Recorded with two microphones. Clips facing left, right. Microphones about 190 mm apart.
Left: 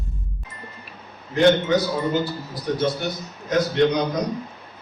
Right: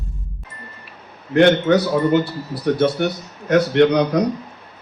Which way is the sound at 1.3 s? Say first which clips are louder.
Right 4 dB; 65° right (ahead or behind).